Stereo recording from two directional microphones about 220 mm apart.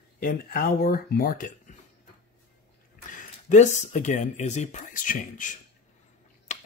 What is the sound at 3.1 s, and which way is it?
Speech, 35° left (ahead or behind).